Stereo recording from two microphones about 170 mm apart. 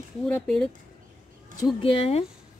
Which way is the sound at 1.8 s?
30° left (ahead or behind).